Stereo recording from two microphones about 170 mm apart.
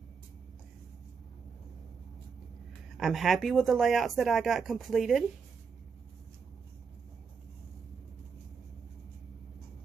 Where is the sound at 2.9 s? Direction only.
Centre (ahead or behind).